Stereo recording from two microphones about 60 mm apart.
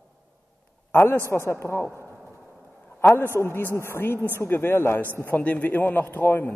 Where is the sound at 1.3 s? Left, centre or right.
Left.